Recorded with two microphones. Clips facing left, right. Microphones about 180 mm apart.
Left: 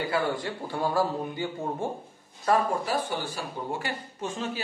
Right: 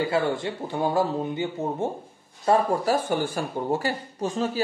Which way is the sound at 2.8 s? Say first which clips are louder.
Right 6 dB; 45° right (ahead or behind).